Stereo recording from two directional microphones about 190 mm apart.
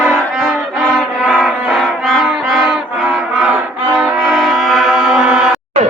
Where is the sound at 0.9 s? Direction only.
Centre (ahead or behind).